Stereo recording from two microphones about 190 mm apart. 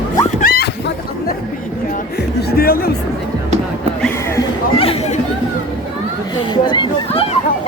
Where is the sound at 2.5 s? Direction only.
50° left (ahead or behind).